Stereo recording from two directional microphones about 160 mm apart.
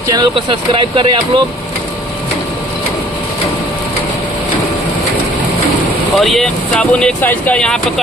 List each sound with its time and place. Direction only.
0.1 s speech: 30° right (ahead or behind)
6.1 s speech: centre (ahead or behind)